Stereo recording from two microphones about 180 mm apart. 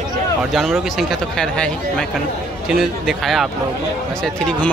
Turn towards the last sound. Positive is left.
turn(degrees=5)  # may be behind; listen again after turning